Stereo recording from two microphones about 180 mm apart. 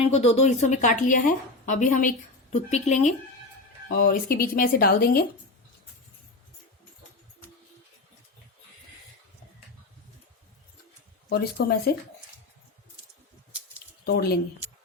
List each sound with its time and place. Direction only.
0.0 s a woman's voice: 35° left (ahead or behind)
3.8 s speech: 55° left (ahead or behind)
11.3 s speech: 60° left (ahead or behind)
14.0 s speech: 60° left (ahead or behind)